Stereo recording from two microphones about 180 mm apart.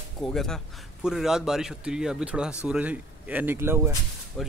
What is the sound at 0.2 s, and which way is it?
Speech, centre (ahead or behind).